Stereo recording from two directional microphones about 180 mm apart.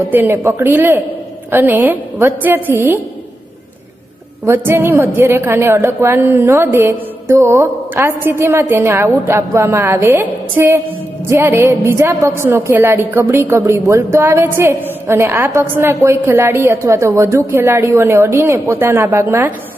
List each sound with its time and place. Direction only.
0.1 s a woman's voice: 10° right (ahead or behind)
4.5 s a woman's voice: 15° right (ahead or behind)